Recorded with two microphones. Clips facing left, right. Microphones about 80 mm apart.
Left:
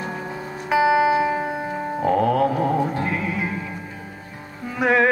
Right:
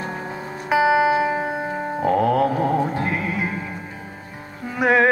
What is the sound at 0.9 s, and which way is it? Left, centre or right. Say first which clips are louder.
Music: even; right.